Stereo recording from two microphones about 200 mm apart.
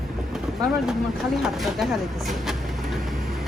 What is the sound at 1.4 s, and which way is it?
Vehicle, centre (ahead or behind).